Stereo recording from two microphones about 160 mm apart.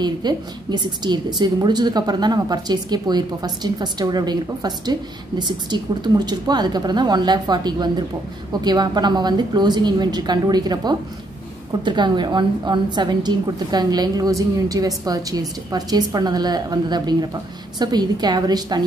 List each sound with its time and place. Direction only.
0.0 s a woman's voice: 25° right (ahead or behind)